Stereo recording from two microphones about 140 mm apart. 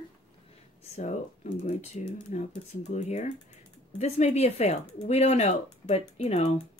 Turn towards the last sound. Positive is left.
turn(degrees=50)  # may be behind; listen again after turning